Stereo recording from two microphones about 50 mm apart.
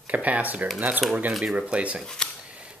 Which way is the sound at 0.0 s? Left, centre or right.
Right.